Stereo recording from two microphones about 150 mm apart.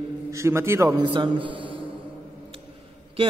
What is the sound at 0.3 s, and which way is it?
Speech, 20° right (ahead or behind).